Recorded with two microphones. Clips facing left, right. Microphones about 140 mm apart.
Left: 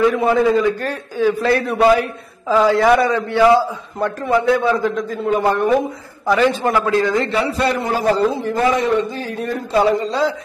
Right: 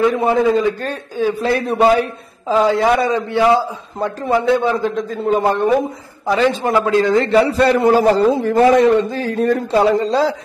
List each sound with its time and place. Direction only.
0.0 s a man's voice: 25° right (ahead or behind)